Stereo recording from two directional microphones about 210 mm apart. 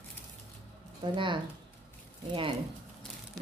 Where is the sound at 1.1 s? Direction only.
25° right (ahead or behind).